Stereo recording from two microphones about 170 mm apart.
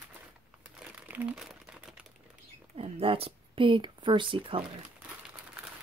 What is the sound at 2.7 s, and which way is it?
Speech, 35° right (ahead or behind).